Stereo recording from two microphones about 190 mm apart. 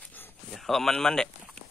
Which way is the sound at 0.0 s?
10° left (ahead or behind).